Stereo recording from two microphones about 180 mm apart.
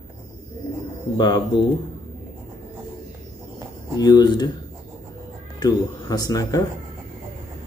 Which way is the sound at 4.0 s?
20° left (ahead or behind).